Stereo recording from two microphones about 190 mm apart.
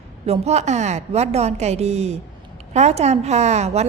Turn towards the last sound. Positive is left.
turn(degrees=-35)  # may be behind; listen again after turning